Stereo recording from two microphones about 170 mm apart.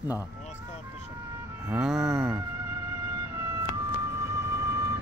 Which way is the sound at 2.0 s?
15° right (ahead or behind).